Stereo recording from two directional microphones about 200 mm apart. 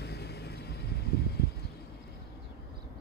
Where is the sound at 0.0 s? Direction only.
55° left (ahead or behind).